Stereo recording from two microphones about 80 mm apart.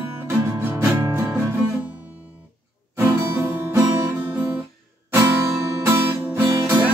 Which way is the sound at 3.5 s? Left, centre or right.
Right.